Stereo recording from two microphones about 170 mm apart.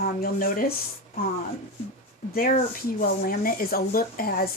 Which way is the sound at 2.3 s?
55° left (ahead or behind).